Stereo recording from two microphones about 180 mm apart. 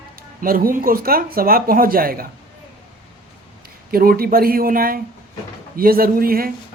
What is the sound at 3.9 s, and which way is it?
Speech, 55° right (ahead or behind).